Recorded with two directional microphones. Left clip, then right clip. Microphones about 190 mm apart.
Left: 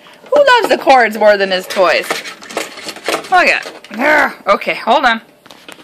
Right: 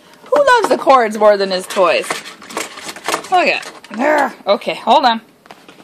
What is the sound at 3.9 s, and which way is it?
Speech, 5° right (ahead or behind).